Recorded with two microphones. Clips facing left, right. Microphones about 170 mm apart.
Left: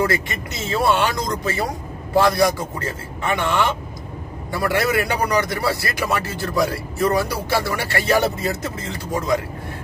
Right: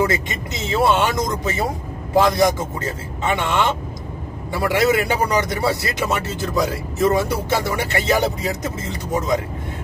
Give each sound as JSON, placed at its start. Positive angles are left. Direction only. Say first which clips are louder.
{"t": 0.0, "sound": "a man's voice", "louder": "right 1 dB", "side_deg": -20}